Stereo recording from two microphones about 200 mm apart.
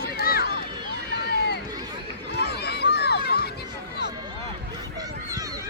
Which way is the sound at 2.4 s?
55° left (ahead or behind).